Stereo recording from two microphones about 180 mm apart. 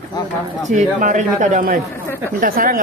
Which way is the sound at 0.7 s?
40° right (ahead or behind).